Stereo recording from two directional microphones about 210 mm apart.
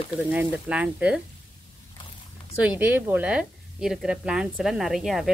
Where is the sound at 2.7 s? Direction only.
5° right (ahead or behind).